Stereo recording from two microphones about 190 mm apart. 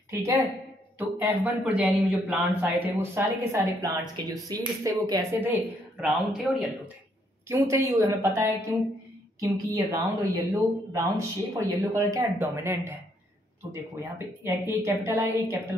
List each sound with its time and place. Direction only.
0.1 s a woman's voice: 15° right (ahead or behind)
7.4 s speech: 15° right (ahead or behind)